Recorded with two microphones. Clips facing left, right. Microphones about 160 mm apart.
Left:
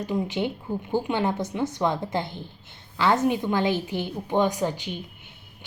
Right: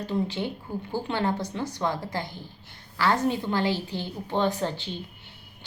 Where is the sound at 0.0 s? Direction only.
20° left (ahead or behind).